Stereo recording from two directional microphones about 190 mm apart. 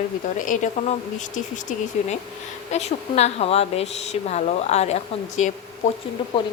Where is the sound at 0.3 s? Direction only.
45° left (ahead or behind).